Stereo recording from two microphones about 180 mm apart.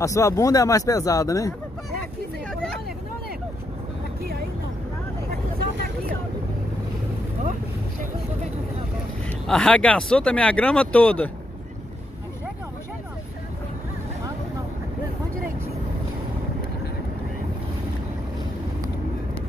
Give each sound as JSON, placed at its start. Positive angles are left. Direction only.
{"t": 0.0, "sound": "speech", "side_deg": 15}
{"t": 9.5, "sound": "speech", "side_deg": 5}